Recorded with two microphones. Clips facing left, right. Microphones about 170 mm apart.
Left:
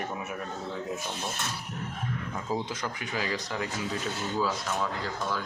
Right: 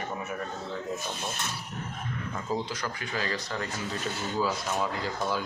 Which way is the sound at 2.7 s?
20° left (ahead or behind).